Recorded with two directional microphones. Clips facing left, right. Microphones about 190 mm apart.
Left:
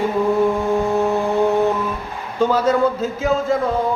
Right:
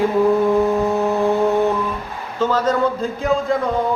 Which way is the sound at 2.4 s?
10° left (ahead or behind).